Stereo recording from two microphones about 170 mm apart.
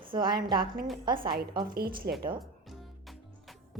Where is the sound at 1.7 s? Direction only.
65° right (ahead or behind).